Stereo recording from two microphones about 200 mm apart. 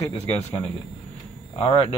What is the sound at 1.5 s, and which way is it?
Speech, 25° left (ahead or behind).